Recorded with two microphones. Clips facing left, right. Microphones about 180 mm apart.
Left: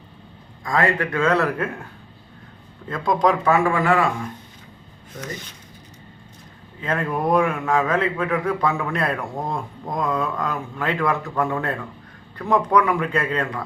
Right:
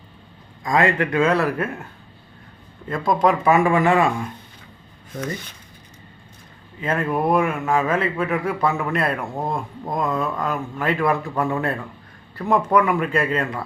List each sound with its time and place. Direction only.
0.6 s a man's voice: 20° right (ahead or behind)
2.9 s speech: 5° right (ahead or behind)
3.5 s speech: 20° right (ahead or behind)
6.8 s a man's voice: 5° right (ahead or behind)